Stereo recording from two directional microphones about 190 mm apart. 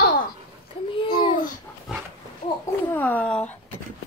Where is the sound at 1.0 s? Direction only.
25° left (ahead or behind).